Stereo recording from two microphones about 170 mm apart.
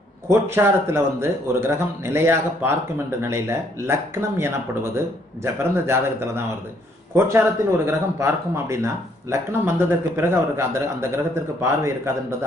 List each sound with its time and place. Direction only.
0.3 s speech: 15° right (ahead or behind)